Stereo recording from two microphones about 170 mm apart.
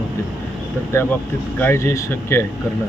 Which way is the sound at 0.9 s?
15° left (ahead or behind).